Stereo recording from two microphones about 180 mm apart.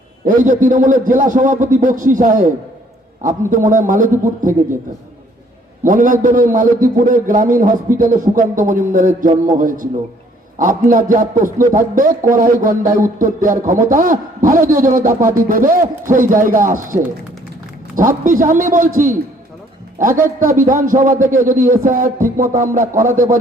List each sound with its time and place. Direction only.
0.3 s a man's voice: 45° right (ahead or behind)
5.8 s a man's voice: 45° right (ahead or behind)